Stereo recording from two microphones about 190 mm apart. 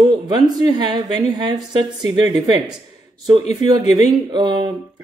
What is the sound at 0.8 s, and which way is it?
Speech, 20° right (ahead or behind).